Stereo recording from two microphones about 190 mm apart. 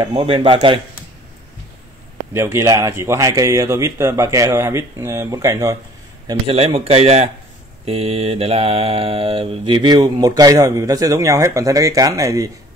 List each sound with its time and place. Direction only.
0.1 s mantra: 30° right (ahead or behind)
2.3 s speech: 15° right (ahead or behind)
6.2 s a man's voice: 30° right (ahead or behind)
7.8 s mantra: 30° right (ahead or behind); by 12.4 s 15° right (ahead or behind)